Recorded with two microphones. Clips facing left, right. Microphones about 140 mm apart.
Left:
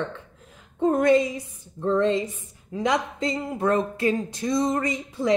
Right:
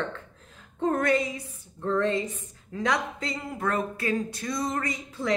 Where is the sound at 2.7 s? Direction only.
15° left (ahead or behind).